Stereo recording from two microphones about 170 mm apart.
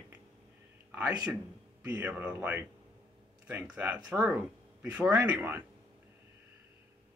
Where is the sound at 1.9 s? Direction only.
10° right (ahead or behind).